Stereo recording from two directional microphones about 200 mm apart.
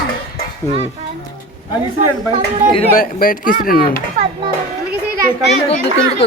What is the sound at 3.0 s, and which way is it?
Speech, 45° left (ahead or behind).